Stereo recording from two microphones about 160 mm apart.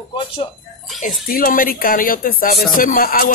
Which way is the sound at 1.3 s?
60° left (ahead or behind).